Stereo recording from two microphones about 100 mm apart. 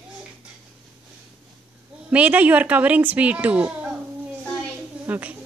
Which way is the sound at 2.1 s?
15° right (ahead or behind).